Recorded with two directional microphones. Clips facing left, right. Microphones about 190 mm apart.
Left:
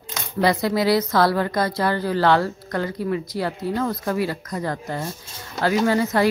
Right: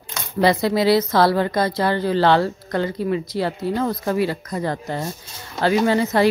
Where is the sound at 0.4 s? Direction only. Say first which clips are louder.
Right 2 dB; 25° right (ahead or behind).